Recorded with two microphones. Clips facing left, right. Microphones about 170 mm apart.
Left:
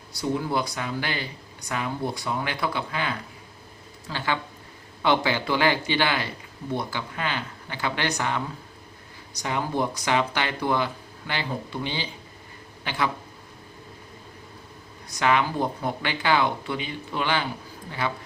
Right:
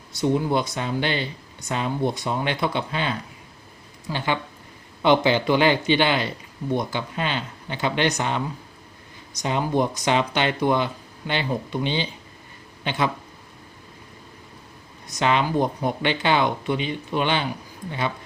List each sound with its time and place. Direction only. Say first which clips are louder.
0.1 s speech: right 5 dB; 20° right (ahead or behind)
15.1 s speech: right 2 dB; 20° right (ahead or behind)